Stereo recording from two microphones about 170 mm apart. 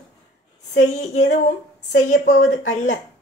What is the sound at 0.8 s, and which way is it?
Speech, 45° left (ahead or behind).